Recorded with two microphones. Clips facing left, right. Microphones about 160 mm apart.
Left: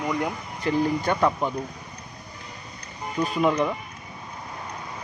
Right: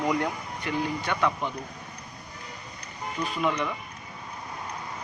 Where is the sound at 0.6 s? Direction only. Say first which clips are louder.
Left 6 dB; 40° left (ahead or behind).